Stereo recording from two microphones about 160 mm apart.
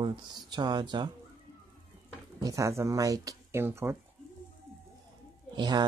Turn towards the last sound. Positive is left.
turn(degrees=-25)  # may be behind; listen again after turning